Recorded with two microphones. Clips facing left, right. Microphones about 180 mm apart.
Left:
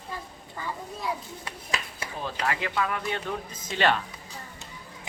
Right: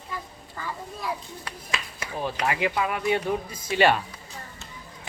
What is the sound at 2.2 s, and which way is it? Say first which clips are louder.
Speech: right 4 dB; 15° right (ahead or behind).